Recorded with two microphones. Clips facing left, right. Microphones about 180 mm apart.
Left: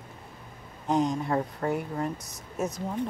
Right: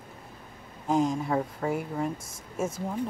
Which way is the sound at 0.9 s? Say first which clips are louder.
Even; centre (ahead or behind).